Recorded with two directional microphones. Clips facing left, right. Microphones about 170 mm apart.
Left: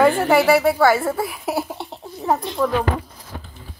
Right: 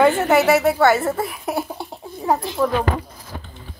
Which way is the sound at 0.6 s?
5° left (ahead or behind).